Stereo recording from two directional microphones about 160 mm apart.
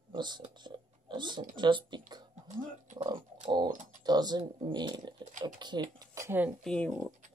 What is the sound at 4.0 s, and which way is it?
Speech, 25° right (ahead or behind).